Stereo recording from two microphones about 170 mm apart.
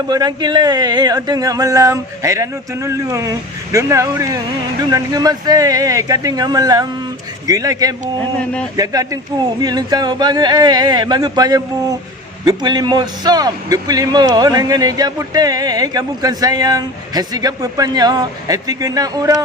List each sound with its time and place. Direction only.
0.1 s a man's voice: 25° right (ahead or behind)